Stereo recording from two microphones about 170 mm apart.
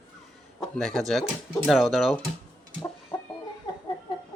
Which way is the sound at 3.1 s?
15° left (ahead or behind).